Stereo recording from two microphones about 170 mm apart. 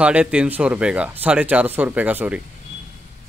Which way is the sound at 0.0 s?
5° right (ahead or behind).